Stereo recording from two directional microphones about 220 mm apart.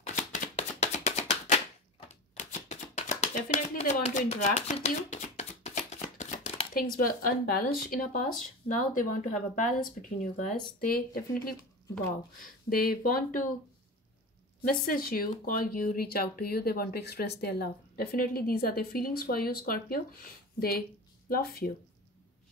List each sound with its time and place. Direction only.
0.0 s chopping: 30° left (ahead or behind)
6.7 s speech: 40° left (ahead or behind)
8.6 s speech: 35° left (ahead or behind)
12.6 s speech: 40° left (ahead or behind)
14.7 s a woman's voice: 40° left (ahead or behind)